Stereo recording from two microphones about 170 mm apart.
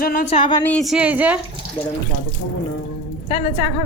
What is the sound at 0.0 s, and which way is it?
Speech, 55° left (ahead or behind).